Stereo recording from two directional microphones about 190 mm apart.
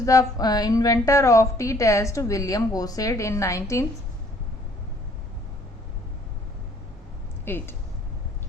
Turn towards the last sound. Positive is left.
turn(degrees=10)  # may be behind; listen again after turning